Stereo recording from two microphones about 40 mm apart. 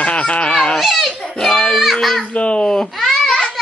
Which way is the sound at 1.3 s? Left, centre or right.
Centre.